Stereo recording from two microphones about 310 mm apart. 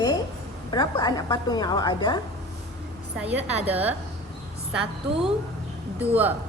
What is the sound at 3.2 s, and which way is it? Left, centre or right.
Speech, centre.